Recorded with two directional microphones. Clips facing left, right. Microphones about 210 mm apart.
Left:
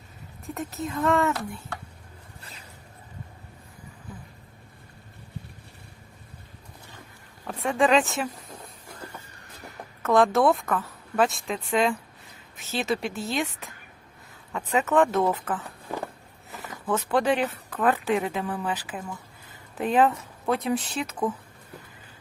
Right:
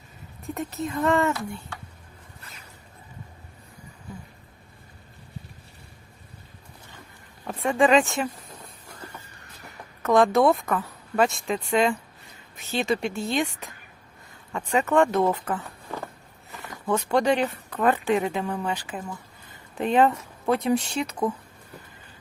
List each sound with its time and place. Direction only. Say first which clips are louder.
0.4 s a woman's voice: right 2 dB; centre (ahead or behind)
2.4 s a sound: left 1 dB; 30° left (ahead or behind)
7.4 s speech: right 2 dB; centre (ahead or behind)
10.0 s a woman's voice: right 1 dB; centre (ahead or behind)